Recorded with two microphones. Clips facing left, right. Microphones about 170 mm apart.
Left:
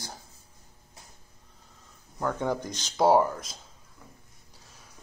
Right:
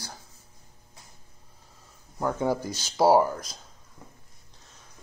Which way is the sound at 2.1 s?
5° right (ahead or behind).